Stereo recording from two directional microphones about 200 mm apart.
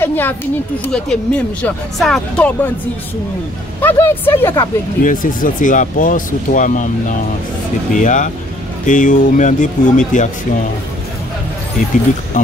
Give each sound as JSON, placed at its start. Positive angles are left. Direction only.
{"t": 0.0, "sound": "speech", "side_deg": 10}
{"t": 3.8, "sound": "speech", "side_deg": 10}
{"t": 5.0, "sound": "speech", "side_deg": 40}